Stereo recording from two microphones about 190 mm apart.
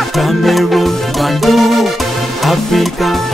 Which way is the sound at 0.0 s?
Centre (ahead or behind).